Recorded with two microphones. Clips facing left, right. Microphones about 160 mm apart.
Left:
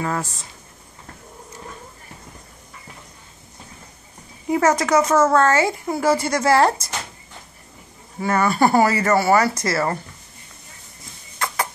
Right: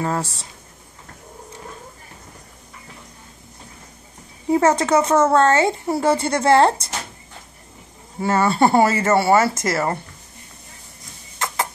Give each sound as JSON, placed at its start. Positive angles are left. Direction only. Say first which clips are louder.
{"t": 0.0, "sound": "speech", "louder": "right 2 dB", "side_deg": -30}
{"t": 4.5, "sound": "speech", "louder": "right 1 dB", "side_deg": -30}
{"t": 8.2, "sound": "speech", "louder": "right 1 dB", "side_deg": -30}
{"t": 11.3, "sound": "a sound", "louder": "even", "side_deg": -20}